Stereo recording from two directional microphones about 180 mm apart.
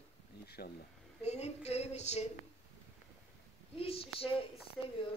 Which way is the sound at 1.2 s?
35° left (ahead or behind).